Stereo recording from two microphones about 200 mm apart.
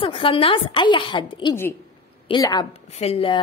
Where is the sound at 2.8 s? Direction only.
35° left (ahead or behind).